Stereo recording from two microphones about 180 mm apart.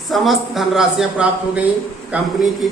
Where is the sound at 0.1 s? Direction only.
Centre (ahead or behind).